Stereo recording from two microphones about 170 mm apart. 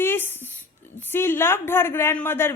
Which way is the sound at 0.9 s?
15° left (ahead or behind).